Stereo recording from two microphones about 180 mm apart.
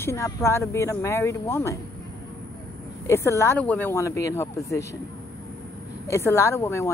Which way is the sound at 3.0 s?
15° left (ahead or behind).